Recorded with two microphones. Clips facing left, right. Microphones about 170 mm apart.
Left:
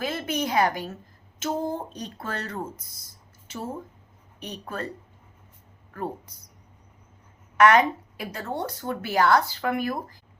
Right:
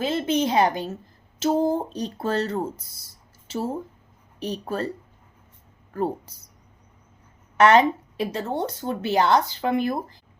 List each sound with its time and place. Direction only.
0.0 s a woman's voice: 25° right (ahead or behind)
5.9 s a woman's voice: 30° right (ahead or behind)
7.5 s a woman's voice: 30° right (ahead or behind)